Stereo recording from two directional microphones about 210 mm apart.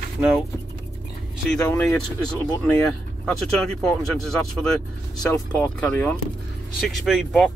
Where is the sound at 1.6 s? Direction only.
10° left (ahead or behind).